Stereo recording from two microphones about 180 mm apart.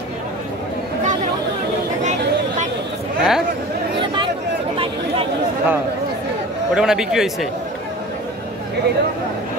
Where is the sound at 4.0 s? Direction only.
25° right (ahead or behind).